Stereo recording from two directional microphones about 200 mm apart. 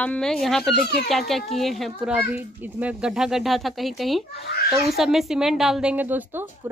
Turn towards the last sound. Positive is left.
turn(degrees=-10)  # may be behind; listen again after turning